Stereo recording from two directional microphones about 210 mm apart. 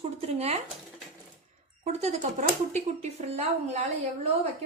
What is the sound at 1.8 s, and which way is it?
A woman's voice, 35° right (ahead or behind).